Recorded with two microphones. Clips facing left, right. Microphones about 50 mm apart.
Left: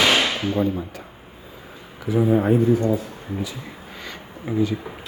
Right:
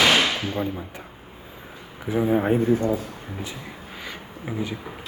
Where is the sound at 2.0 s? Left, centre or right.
Centre.